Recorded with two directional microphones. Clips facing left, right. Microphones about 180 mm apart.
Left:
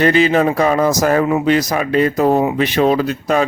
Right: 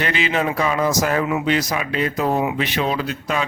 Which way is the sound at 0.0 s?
40° left (ahead or behind).